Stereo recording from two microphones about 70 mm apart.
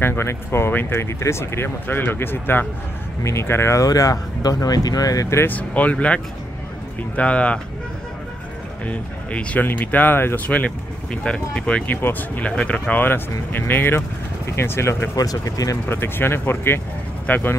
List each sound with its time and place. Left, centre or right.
0.0 s speech: left
3.8 s speech: left
5.4 s speech: left
8.8 s speech: centre; by 15.0 s left
15.1 s speech: left
15.9 s speech: left